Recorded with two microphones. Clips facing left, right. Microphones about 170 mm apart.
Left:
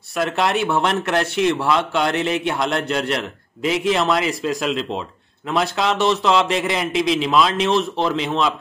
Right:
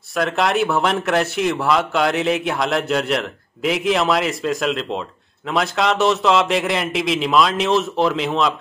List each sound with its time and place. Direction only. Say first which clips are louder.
0.1 s speech: right 1 dB; centre (ahead or behind)